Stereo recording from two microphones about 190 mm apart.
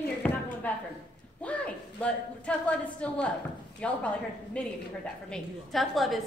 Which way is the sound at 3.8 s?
5° left (ahead or behind).